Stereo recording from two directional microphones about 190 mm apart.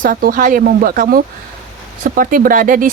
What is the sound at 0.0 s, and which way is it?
Speech, 45° right (ahead or behind).